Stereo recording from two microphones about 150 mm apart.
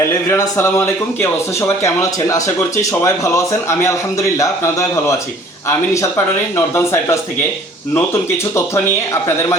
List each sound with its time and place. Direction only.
0.1 s a man's voice: 15° left (ahead or behind)